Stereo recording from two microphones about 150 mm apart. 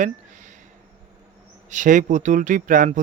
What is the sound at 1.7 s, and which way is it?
Speech, 60° right (ahead or behind).